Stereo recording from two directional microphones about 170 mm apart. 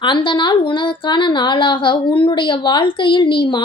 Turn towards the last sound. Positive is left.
turn(degrees=30)  # may be behind; listen again after turning